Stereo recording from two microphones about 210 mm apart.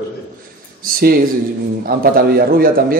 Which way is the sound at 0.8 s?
45° right (ahead or behind).